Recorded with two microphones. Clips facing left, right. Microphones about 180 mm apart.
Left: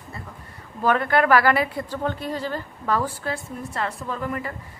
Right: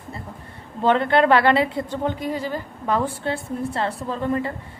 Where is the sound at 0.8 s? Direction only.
25° right (ahead or behind).